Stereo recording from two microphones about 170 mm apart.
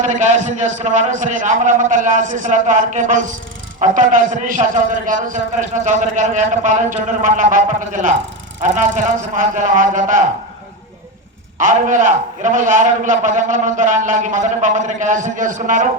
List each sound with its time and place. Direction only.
0.0 s a man's voice: 45° right (ahead or behind)
11.5 s a man's voice: 50° right (ahead or behind)